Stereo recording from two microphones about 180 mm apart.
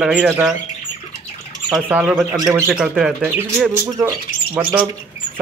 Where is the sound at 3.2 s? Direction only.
15° right (ahead or behind).